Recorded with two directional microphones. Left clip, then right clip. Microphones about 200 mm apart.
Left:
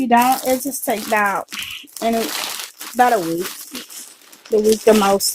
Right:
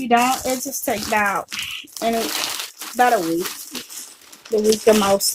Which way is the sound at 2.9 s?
50° left (ahead or behind).